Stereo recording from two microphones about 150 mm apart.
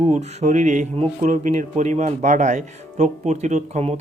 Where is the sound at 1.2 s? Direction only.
60° right (ahead or behind).